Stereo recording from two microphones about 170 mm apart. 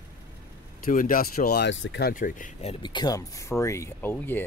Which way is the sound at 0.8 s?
55° left (ahead or behind).